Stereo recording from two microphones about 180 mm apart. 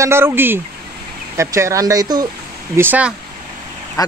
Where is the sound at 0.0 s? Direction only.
15° right (ahead or behind).